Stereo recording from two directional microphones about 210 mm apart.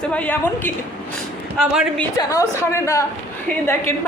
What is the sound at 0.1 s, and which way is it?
A woman's voice, 10° left (ahead or behind).